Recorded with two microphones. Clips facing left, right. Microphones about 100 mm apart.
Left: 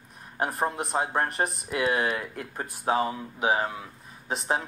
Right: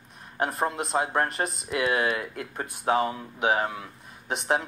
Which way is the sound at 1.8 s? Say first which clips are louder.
Right 1 dB; 40° left (ahead or behind).